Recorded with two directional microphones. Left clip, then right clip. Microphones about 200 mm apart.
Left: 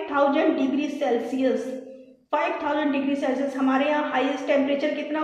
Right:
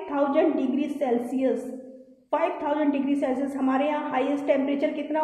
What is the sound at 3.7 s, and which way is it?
A woman's voice, 55° right (ahead or behind).